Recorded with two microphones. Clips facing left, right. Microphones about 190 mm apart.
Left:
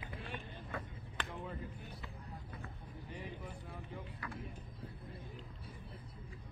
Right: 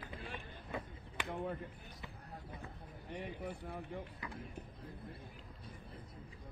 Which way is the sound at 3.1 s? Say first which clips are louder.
Right 5 dB; 60° right (ahead or behind).